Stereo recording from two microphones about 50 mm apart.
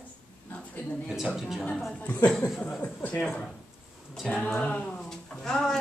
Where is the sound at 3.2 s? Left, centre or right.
Centre.